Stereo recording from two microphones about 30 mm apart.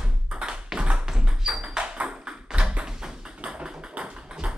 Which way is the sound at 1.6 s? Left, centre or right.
Right.